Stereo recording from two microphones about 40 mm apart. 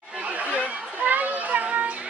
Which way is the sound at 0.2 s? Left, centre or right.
Right.